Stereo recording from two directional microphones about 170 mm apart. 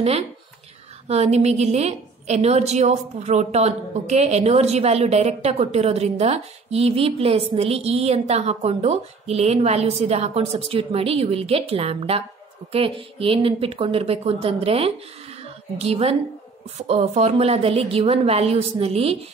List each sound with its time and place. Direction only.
1.0 s a woman's voice: 40° right (ahead or behind)